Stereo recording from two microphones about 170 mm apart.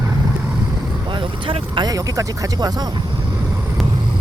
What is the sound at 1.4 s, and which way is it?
Speech, 25° right (ahead or behind).